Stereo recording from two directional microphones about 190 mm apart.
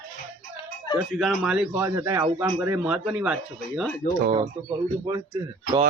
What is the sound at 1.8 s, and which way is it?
Speech, 15° right (ahead or behind).